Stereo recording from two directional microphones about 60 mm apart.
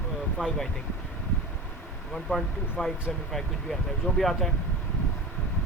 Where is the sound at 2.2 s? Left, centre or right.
Centre.